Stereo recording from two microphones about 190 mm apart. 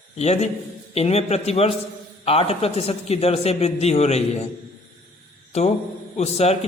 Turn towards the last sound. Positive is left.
turn(degrees=35)  # may be behind; listen again after turning